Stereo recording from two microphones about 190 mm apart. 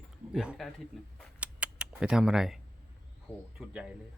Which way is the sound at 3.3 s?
10° left (ahead or behind).